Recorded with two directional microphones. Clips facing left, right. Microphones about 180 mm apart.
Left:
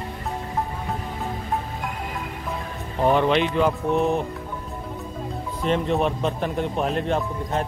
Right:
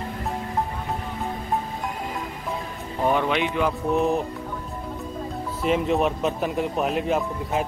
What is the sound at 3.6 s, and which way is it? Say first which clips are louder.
Speech: left 1 dB; centre (ahead or behind).